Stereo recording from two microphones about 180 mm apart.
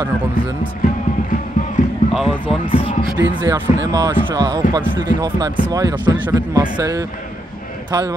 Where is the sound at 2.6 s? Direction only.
30° left (ahead or behind).